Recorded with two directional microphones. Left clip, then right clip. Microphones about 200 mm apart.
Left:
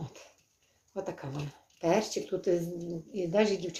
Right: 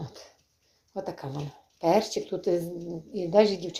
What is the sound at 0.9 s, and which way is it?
Speech, 20° right (ahead or behind).